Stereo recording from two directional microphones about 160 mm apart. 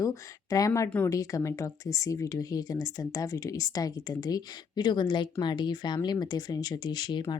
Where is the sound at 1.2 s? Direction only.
20° left (ahead or behind).